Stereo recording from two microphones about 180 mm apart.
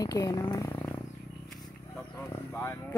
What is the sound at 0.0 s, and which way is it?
Speech, 20° left (ahead or behind).